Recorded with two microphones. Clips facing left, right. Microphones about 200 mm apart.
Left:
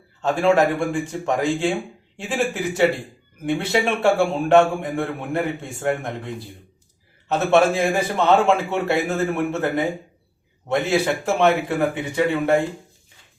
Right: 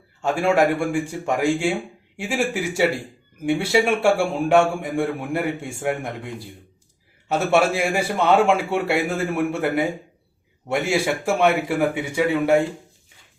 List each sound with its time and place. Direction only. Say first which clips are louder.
0.2 s a man's voice: left 1 dB; 10° right (ahead or behind)
7.3 s a man's voice: left 2 dB; 10° right (ahead or behind)